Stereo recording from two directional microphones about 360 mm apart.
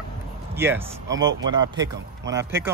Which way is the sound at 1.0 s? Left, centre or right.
Right.